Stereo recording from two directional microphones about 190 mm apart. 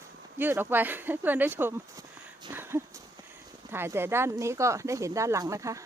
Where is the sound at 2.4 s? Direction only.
10° right (ahead or behind).